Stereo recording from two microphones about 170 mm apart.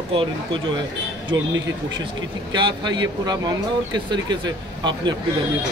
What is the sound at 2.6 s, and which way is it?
Speech, 25° right (ahead or behind).